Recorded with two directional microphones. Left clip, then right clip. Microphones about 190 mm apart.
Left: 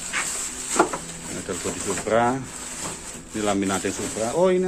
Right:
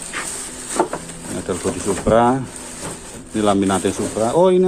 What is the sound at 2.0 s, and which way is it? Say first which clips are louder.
Speech: right 6 dB; 20° right (ahead or behind).